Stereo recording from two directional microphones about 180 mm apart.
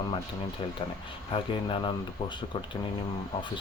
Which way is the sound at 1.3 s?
30° left (ahead or behind).